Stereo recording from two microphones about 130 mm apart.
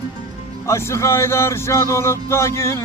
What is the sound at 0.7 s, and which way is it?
Speech, 20° left (ahead or behind).